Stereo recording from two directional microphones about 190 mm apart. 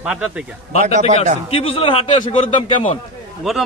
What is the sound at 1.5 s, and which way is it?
A man's voice, 30° left (ahead or behind).